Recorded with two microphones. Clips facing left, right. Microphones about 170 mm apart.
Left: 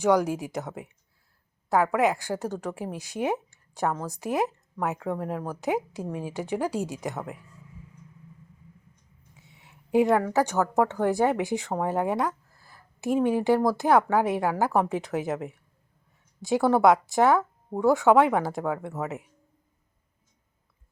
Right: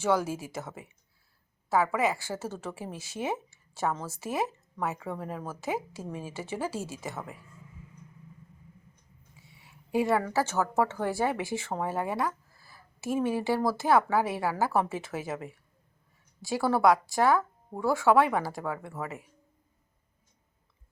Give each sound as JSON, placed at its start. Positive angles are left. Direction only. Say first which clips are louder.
{"t": 0.0, "sound": "speech", "louder": "left 5 dB", "side_deg": 15}
{"t": 1.7, "sound": "speech", "louder": "left 4 dB", "side_deg": 15}
{"t": 9.3, "sound": "a sound", "louder": "left 2 dB", "side_deg": 20}
{"t": 10.3, "sound": "speech", "louder": "left 4 dB", "side_deg": 15}